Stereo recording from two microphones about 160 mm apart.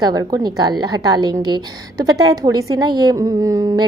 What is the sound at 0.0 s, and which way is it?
A woman's voice, 25° right (ahead or behind).